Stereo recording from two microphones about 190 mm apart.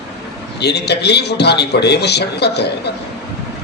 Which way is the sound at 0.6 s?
60° left (ahead or behind).